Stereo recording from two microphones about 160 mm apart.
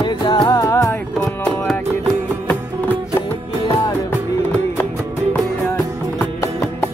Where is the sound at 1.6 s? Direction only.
5° left (ahead or behind).